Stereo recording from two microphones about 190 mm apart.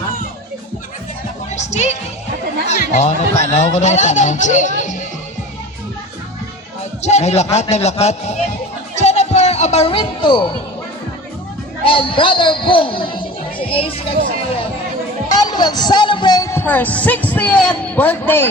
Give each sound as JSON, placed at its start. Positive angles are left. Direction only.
{"t": 1.5, "sound": "speech", "side_deg": 35}
{"t": 2.6, "sound": "chatter", "side_deg": 35}
{"t": 3.4, "sound": "speech", "side_deg": 35}
{"t": 7.0, "sound": "speech", "side_deg": 35}
{"t": 9.0, "sound": "music", "side_deg": 35}
{"t": 11.9, "sound": "a man's voice", "side_deg": 25}
{"t": 15.3, "sound": "speech", "side_deg": 20}